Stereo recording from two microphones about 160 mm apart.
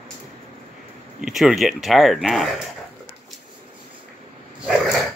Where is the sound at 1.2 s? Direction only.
5° right (ahead or behind).